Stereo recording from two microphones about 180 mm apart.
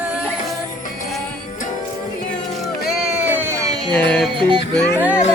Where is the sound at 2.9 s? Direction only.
5° right (ahead or behind).